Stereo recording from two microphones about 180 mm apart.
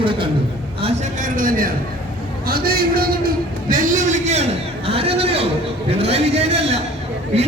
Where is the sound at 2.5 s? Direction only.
55° right (ahead or behind); by 5.5 s 35° right (ahead or behind).